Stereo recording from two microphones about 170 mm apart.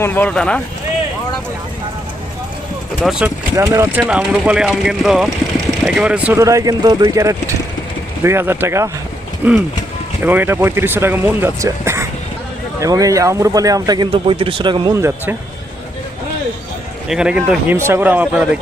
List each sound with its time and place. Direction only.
0.0 s speech: 10° left (ahead or behind)
3.0 s speech: 5° right (ahead or behind)
3.5 s speech: 20° right (ahead or behind)
4.1 s speech: 5° right (ahead or behind)
6.4 s speech: 20° right (ahead or behind)
17.1 s speech: 5° right (ahead or behind)